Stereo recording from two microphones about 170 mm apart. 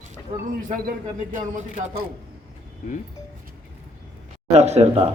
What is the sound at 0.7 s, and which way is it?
Speech, 50° right (ahead or behind).